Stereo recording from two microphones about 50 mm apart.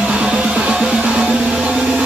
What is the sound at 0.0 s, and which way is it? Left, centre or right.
Music, right.